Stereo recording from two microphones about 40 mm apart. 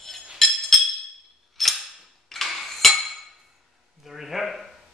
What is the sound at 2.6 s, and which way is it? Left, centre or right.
Dishes, centre.